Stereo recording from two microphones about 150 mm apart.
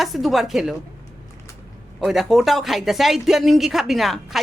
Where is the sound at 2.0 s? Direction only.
Centre (ahead or behind).